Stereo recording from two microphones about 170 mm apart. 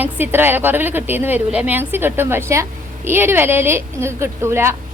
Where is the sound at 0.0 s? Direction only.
10° right (ahead or behind).